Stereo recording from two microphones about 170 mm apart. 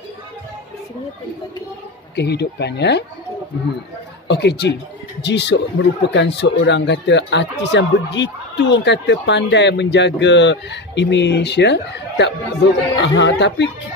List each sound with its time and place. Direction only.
2.1 s speech: 75° left (ahead or behind)
4.3 s speech: 85° left